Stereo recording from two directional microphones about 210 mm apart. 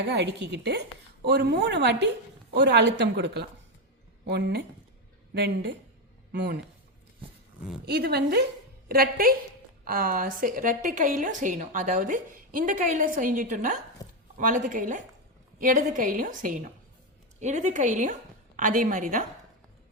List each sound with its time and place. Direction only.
0.0 s speech: 55° right (ahead or behind)
7.9 s a woman's voice: 50° right (ahead or behind)